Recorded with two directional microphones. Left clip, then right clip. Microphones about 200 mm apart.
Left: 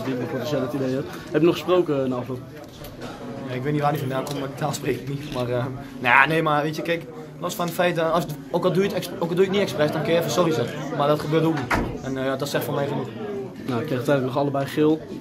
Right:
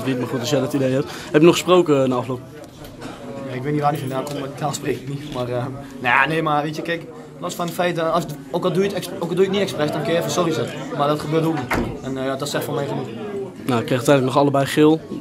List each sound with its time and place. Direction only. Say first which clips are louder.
0.1 s a man's voice: right 5 dB; 45° right (ahead or behind)
3.5 s a man's voice: right 3 dB; centre (ahead or behind)
13.7 s a man's voice: right 6 dB; 40° right (ahead or behind)